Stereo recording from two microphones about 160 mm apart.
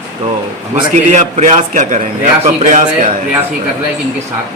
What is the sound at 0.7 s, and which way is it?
A man's voice, 50° right (ahead or behind).